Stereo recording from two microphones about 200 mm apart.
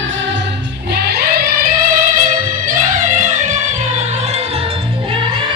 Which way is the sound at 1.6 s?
45° right (ahead or behind).